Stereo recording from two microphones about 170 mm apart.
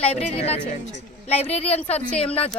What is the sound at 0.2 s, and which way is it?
Speech, 35° left (ahead or behind).